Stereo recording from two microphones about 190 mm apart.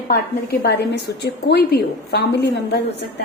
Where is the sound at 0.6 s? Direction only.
60° left (ahead or behind).